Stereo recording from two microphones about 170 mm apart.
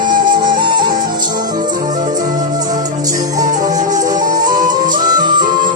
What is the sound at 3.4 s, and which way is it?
Music, 50° right (ahead or behind).